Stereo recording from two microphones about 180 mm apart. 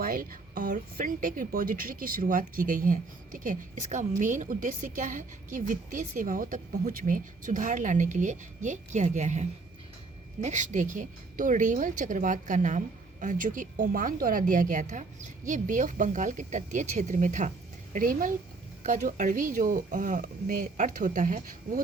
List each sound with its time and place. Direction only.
0.0 s a woman's voice: 55° right (ahead or behind)